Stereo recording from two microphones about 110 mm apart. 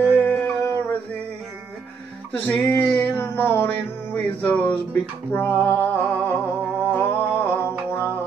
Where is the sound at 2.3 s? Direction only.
15° left (ahead or behind).